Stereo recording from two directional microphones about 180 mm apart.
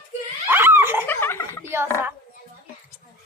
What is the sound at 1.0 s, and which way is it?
Laughter, 10° left (ahead or behind).